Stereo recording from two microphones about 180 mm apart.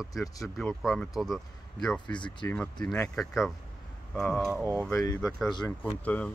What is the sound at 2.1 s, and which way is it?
Speech, 25° left (ahead or behind).